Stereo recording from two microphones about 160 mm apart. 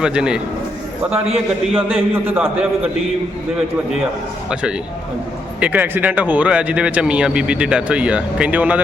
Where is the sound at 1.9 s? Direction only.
35° right (ahead or behind).